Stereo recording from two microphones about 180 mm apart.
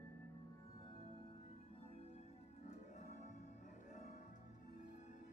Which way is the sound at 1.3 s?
35° left (ahead or behind).